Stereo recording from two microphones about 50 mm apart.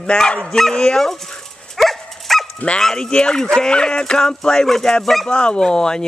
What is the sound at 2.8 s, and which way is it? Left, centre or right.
Speech, centre.